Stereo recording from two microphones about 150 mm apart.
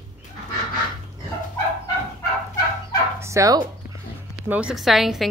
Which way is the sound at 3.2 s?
20° right (ahead or behind).